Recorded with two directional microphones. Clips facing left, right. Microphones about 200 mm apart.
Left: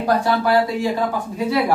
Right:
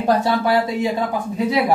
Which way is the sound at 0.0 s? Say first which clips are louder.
Right 1 dB; 20° right (ahead or behind).